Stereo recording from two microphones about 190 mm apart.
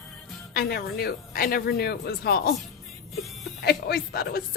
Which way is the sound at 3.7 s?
55° left (ahead or behind).